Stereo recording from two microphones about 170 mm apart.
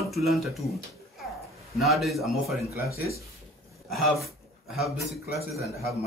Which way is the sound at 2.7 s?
65° left (ahead or behind).